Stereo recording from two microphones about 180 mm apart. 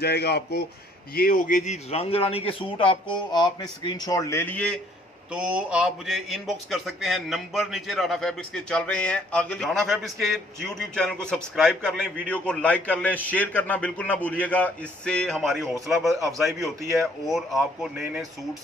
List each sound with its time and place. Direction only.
0.0 s a man's voice: 65° left (ahead or behind); by 4.6 s 10° left (ahead or behind)
5.3 s a man's voice: 5° right (ahead or behind)